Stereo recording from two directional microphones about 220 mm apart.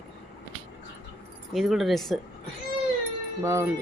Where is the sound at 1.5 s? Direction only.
Centre (ahead or behind).